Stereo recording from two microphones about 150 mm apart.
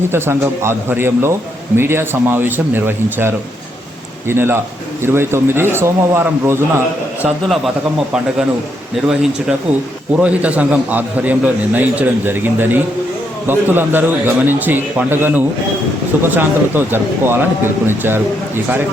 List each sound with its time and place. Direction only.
0.1 s a man's voice: 15° right (ahead or behind)
7.4 s speech: centre (ahead or behind)
10.2 s a man's voice: 10° right (ahead or behind)